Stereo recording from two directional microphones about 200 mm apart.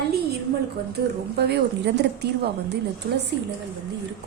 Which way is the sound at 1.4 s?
55° right (ahead or behind).